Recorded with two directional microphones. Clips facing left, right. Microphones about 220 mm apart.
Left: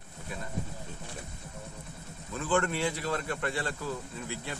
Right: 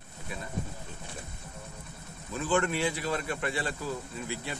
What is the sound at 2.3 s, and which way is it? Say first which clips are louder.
A man's voice: right 1 dB; 5° right (ahead or behind).